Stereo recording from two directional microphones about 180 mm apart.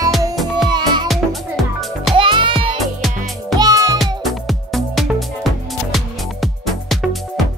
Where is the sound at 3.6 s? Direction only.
20° right (ahead or behind).